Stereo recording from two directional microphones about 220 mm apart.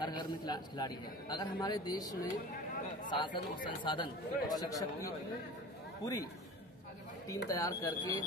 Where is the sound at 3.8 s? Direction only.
20° left (ahead or behind).